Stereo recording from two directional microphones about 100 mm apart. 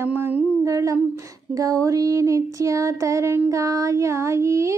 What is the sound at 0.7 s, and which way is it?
Child singing, 35° right (ahead or behind).